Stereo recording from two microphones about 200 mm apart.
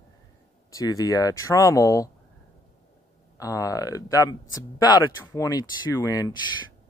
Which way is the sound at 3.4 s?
15° left (ahead or behind).